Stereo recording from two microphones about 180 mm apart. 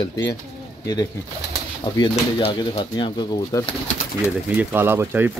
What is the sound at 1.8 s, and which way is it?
Speech, 25° left (ahead or behind).